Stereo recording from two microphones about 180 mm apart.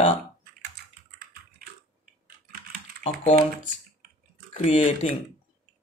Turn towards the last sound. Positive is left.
turn(degrees=35)  # may be behind; listen again after turning